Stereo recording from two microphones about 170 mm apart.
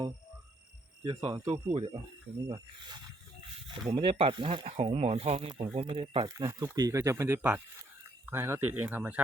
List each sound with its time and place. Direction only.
1.0 s speech: 30° right (ahead or behind)
1.7 s speech: 35° right (ahead or behind)
3.9 s speech: 30° right (ahead or behind); by 9.2 s 10° right (ahead or behind)